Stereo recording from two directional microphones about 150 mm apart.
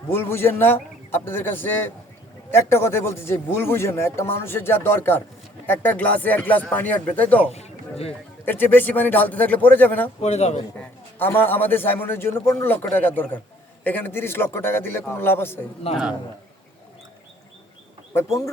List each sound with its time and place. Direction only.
0.1 s a man's voice: 15° left (ahead or behind)
7.5 s a sound: 45° left (ahead or behind)
8.4 s a man's voice: 15° left (ahead or behind)
10.2 s speech: 45° left (ahead or behind)
10.8 s a man's voice: 15° left (ahead or behind)
15.9 s speech: 45° left (ahead or behind)